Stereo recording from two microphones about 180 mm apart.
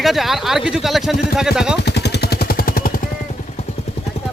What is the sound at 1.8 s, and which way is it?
Machine gun, 70° left (ahead or behind).